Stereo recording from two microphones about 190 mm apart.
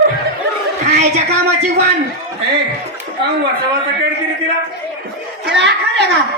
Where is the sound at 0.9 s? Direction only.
35° right (ahead or behind).